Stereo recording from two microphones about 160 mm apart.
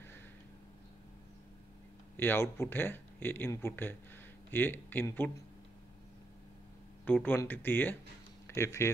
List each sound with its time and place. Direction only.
2.1 s speech: 15° left (ahead or behind)
7.1 s speech: 10° left (ahead or behind)